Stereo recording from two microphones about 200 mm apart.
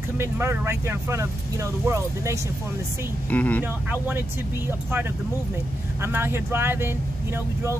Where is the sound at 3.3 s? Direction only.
10° left (ahead or behind).